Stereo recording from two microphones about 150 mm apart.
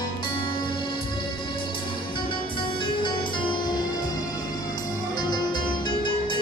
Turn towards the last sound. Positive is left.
turn(degrees=30)  # may be behind; listen again after turning